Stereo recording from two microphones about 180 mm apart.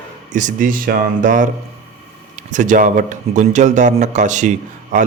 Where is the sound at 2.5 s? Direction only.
45° right (ahead or behind).